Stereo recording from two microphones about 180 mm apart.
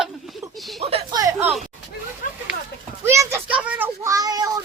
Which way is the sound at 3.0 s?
15° right (ahead or behind).